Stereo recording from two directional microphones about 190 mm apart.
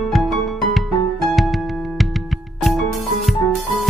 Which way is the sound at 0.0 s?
Centre (ahead or behind).